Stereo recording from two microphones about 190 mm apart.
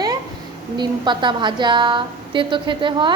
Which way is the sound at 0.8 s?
25° right (ahead or behind).